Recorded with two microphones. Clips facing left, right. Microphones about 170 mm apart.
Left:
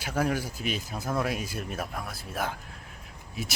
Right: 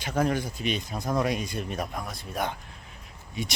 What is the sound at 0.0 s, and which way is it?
Speech, 10° left (ahead or behind).